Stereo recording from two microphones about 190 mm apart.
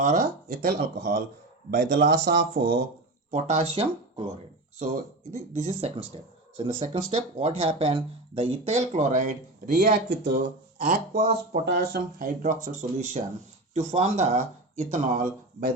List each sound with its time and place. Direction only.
0.0 s speech: 45° right (ahead or behind)
3.3 s speech: 35° right (ahead or behind)
5.3 s speech: 35° right (ahead or behind)
10.1 s speech: 60° right (ahead or behind)
10.8 s speech: 50° right (ahead or behind)